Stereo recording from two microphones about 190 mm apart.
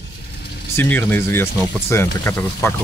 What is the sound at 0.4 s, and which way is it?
Vehicle, 60° left (ahead or behind).